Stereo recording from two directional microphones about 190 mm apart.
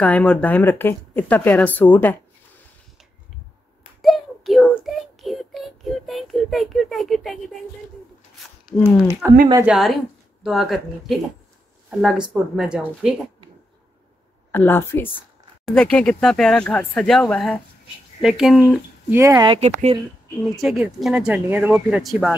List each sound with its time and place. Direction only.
0.0 s speech: 5° left (ahead or behind)
4.0 s child singing: centre (ahead or behind)
8.6 s speech: centre (ahead or behind)
14.5 s speech: 10° left (ahead or behind)
19.1 s speech: 15° right (ahead or behind)
19.6 s speech: 35° right (ahead or behind)
20.5 s speech: centre (ahead or behind)